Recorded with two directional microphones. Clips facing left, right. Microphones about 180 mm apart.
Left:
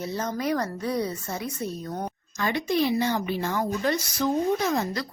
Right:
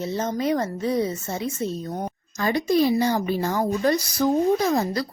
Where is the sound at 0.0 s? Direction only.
25° right (ahead or behind).